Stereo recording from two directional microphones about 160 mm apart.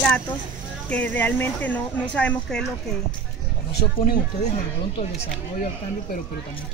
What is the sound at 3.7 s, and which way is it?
Speech, 90° left.